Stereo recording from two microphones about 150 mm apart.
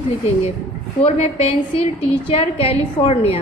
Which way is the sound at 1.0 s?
45° left (ahead or behind).